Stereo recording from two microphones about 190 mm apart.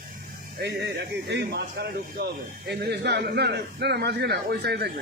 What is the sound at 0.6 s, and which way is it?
A man's voice, 60° right (ahead or behind).